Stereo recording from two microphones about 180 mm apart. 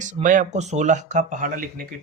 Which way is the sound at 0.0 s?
45° right (ahead or behind).